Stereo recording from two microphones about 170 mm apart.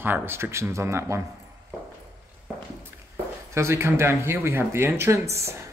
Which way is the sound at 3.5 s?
15° right (ahead or behind).